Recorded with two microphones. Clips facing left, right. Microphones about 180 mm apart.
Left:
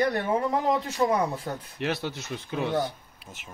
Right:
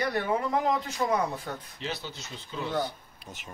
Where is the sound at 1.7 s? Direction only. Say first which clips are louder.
Left 7 dB; 65° left (ahead or behind).